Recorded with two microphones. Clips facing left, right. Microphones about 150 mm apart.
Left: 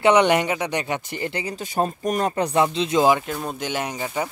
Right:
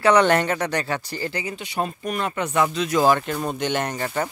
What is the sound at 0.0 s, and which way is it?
Speech, 20° left (ahead or behind).